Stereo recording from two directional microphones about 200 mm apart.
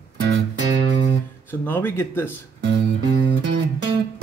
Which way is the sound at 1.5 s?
10° left (ahead or behind).